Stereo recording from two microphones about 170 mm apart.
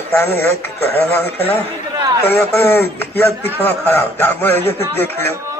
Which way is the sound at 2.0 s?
20° right (ahead or behind).